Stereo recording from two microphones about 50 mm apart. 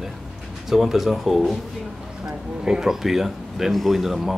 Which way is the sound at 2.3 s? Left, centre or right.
Centre.